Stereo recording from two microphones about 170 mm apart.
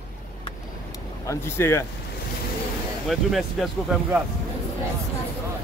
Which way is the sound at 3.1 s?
Centre (ahead or behind).